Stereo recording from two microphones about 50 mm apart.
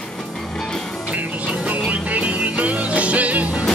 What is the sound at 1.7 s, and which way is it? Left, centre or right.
Music, right.